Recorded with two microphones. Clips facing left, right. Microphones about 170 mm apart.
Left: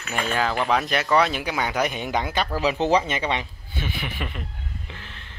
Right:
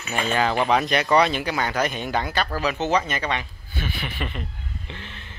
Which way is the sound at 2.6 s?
30° left (ahead or behind).